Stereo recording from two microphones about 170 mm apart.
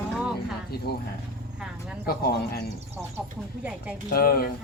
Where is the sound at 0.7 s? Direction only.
65° left (ahead or behind).